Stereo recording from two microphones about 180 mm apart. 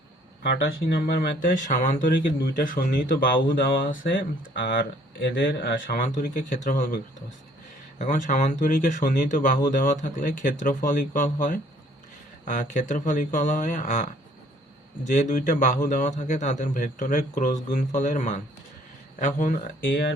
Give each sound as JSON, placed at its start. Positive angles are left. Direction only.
{"t": 0.5, "sound": "speech", "side_deg": 65}
{"t": 7.9, "sound": "speech", "side_deg": 45}